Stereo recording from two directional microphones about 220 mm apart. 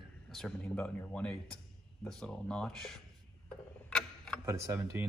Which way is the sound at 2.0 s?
5° left (ahead or behind).